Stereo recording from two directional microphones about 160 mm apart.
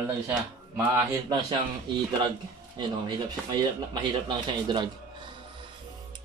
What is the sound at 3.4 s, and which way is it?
Speech, 25° right (ahead or behind).